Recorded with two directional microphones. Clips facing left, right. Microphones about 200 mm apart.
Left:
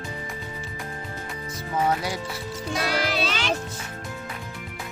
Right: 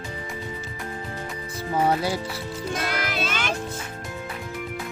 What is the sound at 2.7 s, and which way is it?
Music, 50° right (ahead or behind).